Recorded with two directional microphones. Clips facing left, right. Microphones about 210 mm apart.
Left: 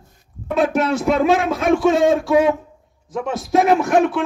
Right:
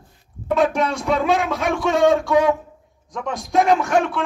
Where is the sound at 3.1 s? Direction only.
5° left (ahead or behind).